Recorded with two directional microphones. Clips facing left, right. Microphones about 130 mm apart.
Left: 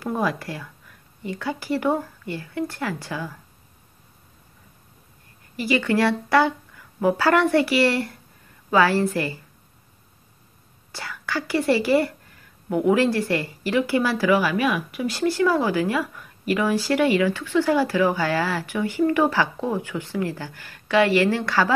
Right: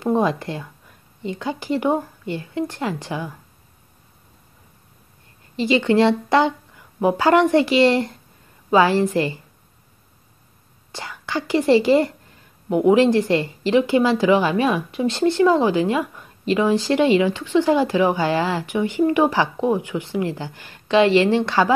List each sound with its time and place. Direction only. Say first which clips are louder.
0.0 s speech: right 5 dB; 25° right (ahead or behind)
5.6 s speech: right 4 dB; 20° right (ahead or behind)
10.9 s speech: right 2 dB; 20° right (ahead or behind)